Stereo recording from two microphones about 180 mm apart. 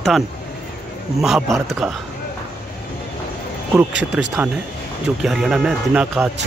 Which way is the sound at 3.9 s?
80° right.